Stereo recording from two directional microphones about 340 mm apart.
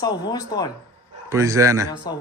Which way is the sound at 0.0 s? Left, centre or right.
Centre.